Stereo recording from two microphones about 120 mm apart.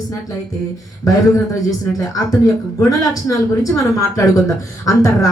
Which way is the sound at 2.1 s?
30° left (ahead or behind).